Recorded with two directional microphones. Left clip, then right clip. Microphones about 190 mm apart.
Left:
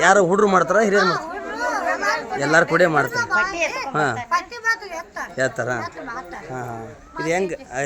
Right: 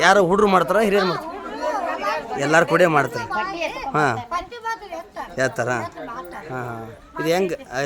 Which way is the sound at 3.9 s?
20° right (ahead or behind).